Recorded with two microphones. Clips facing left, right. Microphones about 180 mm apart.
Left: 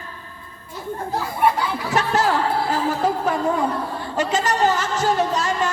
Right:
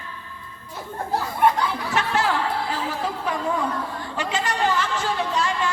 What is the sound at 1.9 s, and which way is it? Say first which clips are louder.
Music: left 5 dB; 40° left (ahead or behind).